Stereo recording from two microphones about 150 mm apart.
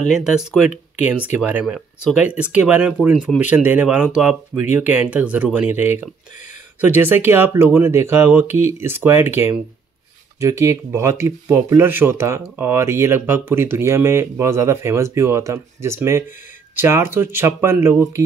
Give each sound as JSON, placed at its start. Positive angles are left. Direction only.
{"t": 0.6, "sound": "speech", "side_deg": -5}
{"t": 10.6, "sound": "speech", "side_deg": -20}